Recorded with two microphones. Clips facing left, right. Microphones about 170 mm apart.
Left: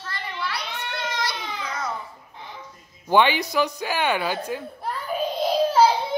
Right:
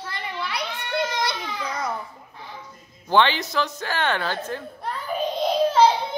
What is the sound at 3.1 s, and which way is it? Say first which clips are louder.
Speech: left 1 dB; 15° left (ahead or behind).